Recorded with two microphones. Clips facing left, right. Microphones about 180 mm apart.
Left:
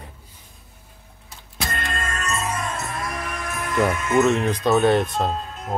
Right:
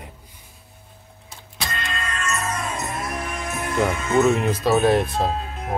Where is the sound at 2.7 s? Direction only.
20° right (ahead or behind).